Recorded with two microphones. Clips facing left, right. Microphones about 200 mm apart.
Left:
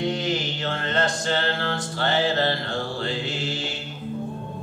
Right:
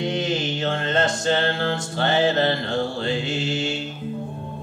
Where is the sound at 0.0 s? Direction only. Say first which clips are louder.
Right 1 dB; 20° right (ahead or behind).